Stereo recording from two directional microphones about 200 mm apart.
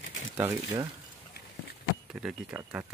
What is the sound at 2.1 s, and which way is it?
Speech, 5° right (ahead or behind).